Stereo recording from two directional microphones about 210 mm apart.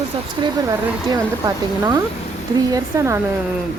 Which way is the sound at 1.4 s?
20° right (ahead or behind).